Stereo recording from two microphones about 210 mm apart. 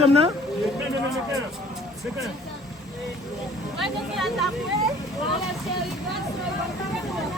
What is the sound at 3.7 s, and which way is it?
Speech, centre (ahead or behind).